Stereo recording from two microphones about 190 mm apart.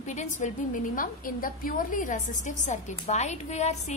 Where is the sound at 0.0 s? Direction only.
40° left (ahead or behind).